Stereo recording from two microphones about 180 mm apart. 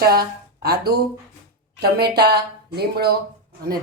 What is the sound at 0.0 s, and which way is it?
Speech, 60° right (ahead or behind).